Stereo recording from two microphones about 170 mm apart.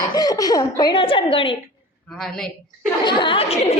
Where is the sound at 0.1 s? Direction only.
20° left (ahead or behind).